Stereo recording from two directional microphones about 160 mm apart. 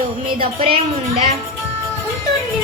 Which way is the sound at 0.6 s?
35° right (ahead or behind).